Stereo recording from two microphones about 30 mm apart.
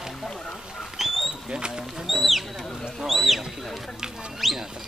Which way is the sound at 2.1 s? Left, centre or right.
Centre.